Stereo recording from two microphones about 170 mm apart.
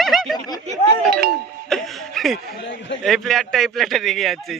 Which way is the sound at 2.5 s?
90° left.